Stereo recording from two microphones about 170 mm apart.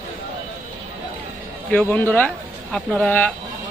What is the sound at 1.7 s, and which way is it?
Speech, 10° left (ahead or behind).